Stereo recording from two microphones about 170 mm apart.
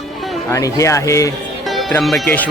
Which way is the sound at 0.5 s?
20° left (ahead or behind).